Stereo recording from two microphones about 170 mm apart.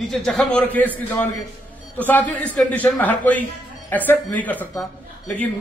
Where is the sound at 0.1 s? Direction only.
5° left (ahead or behind).